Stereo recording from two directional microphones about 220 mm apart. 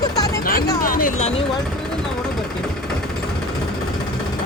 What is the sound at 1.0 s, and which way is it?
Speech, 30° left (ahead or behind).